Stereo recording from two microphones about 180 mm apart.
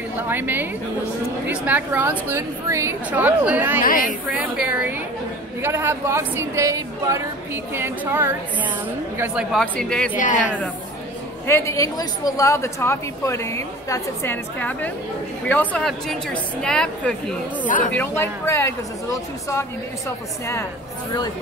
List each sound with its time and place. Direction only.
0.3 s a woman's voice: 10° right (ahead or behind)
3.8 s a woman's voice: 50° left (ahead or behind)
4.3 s a woman's voice: 5° right (ahead or behind)
10.1 s a woman's voice: 45° left (ahead or behind)
11.4 s a woman's voice: 15° left (ahead or behind)